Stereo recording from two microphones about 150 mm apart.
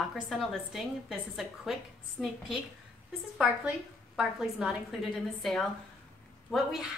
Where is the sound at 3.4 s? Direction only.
5° right (ahead or behind).